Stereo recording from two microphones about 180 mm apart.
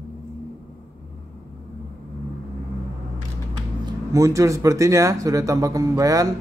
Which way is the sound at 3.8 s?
15° right (ahead or behind).